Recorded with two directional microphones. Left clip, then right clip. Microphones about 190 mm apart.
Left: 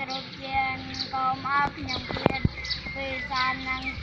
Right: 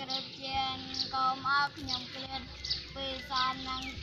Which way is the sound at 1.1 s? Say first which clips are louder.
Left 4 dB; 20° right (ahead or behind).